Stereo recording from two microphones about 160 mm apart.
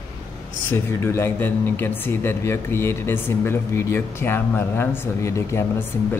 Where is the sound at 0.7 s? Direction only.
15° left (ahead or behind).